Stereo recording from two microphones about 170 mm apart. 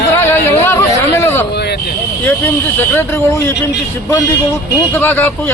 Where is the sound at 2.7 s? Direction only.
15° left (ahead or behind).